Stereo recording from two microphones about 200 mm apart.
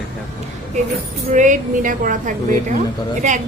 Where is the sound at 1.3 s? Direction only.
40° right (ahead or behind).